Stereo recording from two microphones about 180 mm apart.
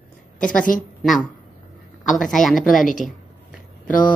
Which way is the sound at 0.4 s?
5° left (ahead or behind).